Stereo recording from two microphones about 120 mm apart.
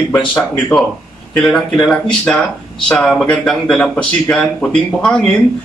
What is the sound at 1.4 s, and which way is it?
Speech, 5° left (ahead or behind).